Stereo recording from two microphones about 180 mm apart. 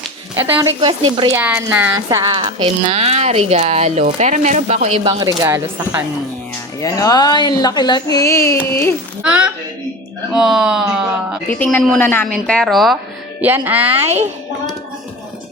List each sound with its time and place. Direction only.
0.3 s speech: 10° right (ahead or behind)
0.8 s speech: 25° right (ahead or behind)
1.4 s speech: 10° right (ahead or behind)
2.6 s speech: 35° right (ahead or behind)
5.0 s speech: 20° right (ahead or behind)
6.7 s speech: 20° left (ahead or behind)
9.2 s a woman's voice: 5° right (ahead or behind)
11.6 s a woman's voice: 5° left (ahead or behind); by 14.1 s 10° right (ahead or behind)